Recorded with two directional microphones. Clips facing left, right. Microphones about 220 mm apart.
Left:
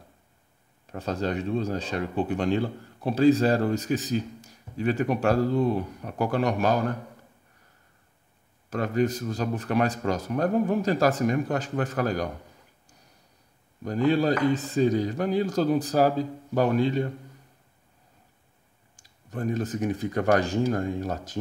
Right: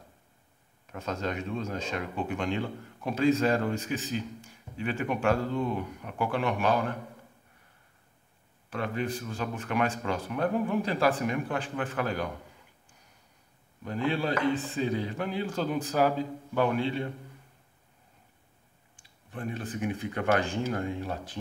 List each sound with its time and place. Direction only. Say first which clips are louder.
0.8 s speech: left 4 dB; 35° left (ahead or behind)
8.6 s speech: left 7 dB; 40° left (ahead or behind)
13.8 s speech: left 7 dB; 40° left (ahead or behind)
18.9 s speech: left 6 dB; 40° left (ahead or behind)